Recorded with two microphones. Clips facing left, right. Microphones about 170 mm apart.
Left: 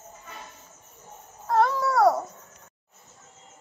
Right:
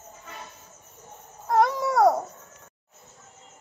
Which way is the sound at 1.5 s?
15° right (ahead or behind).